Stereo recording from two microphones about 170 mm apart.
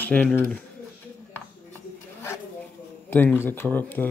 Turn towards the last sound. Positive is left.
turn(degrees=10)  # may be behind; listen again after turning